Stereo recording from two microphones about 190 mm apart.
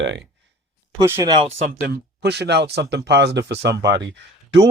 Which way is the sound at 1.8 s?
55° right (ahead or behind).